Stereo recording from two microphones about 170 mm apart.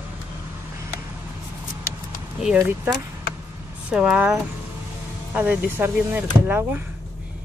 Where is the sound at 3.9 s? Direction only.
5° right (ahead or behind).